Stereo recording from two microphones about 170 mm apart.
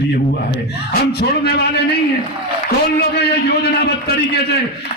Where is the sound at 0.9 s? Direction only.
70° left (ahead or behind).